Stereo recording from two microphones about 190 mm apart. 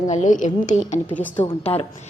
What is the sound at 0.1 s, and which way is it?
Speech, 40° left (ahead or behind).